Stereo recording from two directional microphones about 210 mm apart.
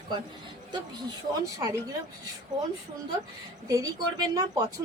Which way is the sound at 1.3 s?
15° right (ahead or behind).